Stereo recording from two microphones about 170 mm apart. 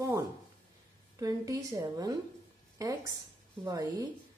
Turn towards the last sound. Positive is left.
turn(degrees=-20)  # may be behind; listen again after turning